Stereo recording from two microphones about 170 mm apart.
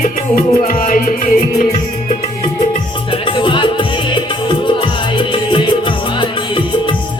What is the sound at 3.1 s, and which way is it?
Music, 30° left (ahead or behind).